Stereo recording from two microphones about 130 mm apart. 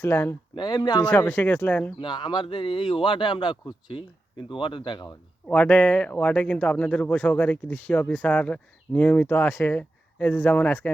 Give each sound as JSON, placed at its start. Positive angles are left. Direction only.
{"t": 0.0, "sound": "speech", "side_deg": 20}
{"t": 0.5, "sound": "a man's voice", "side_deg": 35}
{"t": 1.0, "sound": "speech", "side_deg": 15}
{"t": 2.0, "sound": "a man's voice", "side_deg": 35}
{"t": 5.5, "sound": "speech", "side_deg": 10}